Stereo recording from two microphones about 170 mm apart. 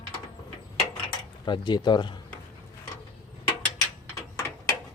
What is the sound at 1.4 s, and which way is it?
Speech, 25° left (ahead or behind).